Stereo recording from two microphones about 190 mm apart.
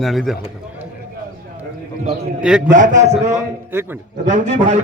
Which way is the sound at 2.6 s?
40° right (ahead or behind).